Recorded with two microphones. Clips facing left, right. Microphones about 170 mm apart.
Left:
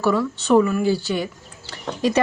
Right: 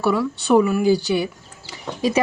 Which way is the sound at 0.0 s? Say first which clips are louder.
Even; 10° right (ahead or behind).